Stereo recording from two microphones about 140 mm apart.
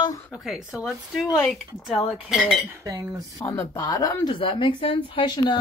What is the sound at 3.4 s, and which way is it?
Speech, 20° left (ahead or behind).